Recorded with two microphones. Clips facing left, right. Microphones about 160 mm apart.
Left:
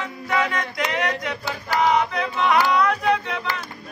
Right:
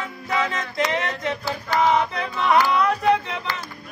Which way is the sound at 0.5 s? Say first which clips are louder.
Right 1 dB; 25° right (ahead or behind).